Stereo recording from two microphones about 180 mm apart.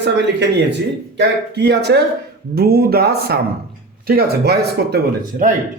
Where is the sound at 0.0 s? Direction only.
75° right (ahead or behind); by 5.5 s 50° right (ahead or behind).